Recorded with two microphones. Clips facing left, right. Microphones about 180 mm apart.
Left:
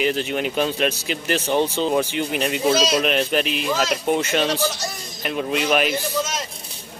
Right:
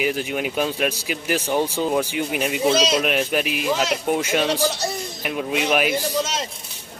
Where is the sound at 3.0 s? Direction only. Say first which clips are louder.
Left 1 dB; 10° right (ahead or behind).